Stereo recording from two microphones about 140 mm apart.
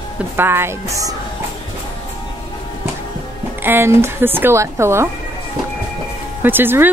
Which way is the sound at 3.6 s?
15° right (ahead or behind).